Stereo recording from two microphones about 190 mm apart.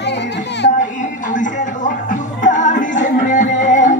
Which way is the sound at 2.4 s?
40° left (ahead or behind).